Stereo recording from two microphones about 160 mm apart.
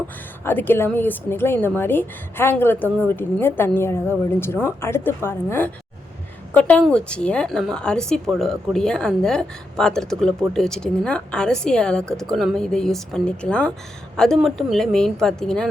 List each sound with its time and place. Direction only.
0.4 s a woman's voice: 15° left (ahead or behind)